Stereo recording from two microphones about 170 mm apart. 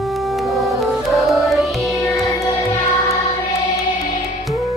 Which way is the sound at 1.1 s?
Centre (ahead or behind).